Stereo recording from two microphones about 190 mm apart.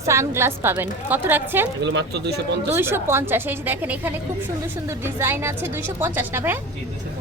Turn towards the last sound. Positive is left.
turn(degrees=-10)  # may be behind; listen again after turning